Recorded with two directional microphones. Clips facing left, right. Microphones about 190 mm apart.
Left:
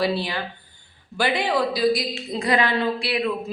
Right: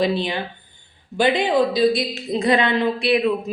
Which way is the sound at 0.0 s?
20° right (ahead or behind).